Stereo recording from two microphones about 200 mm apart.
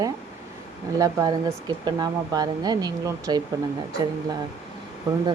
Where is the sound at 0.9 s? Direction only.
15° right (ahead or behind).